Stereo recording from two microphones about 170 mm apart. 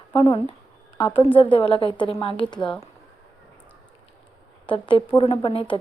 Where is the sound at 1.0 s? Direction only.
30° left (ahead or behind).